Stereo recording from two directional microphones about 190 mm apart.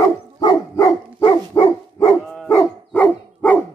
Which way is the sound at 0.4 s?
25° left (ahead or behind).